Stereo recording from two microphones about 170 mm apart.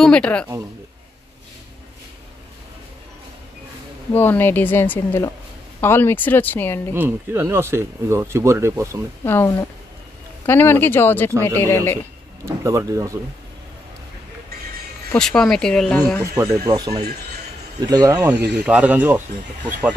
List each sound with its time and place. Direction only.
0.0 s speech: 5° left (ahead or behind)
4.1 s speech: 10° left (ahead or behind)
6.9 s speech: 15° right (ahead or behind)
9.2 s speech: 15° left (ahead or behind)
12.4 s speech: 20° right (ahead or behind)
15.0 s speech: 5° left (ahead or behind)
16.3 s speech: 20° right (ahead or behind)
18.2 s speech: 10° right (ahead or behind)